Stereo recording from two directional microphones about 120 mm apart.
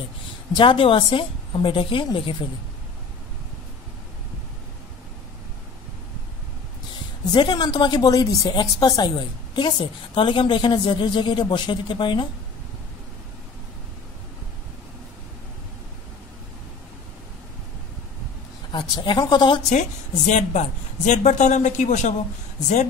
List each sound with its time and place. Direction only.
0.6 s a woman's voice: 45° left (ahead or behind)
7.3 s a woman's voice: 35° left (ahead or behind)
18.7 s speech: 35° left (ahead or behind)
19.7 s a woman's voice: 80° left